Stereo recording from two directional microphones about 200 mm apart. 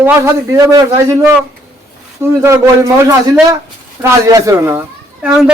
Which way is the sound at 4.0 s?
15° right (ahead or behind).